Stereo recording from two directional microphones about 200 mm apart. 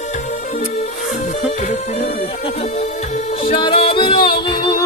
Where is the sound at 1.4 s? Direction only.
30° left (ahead or behind).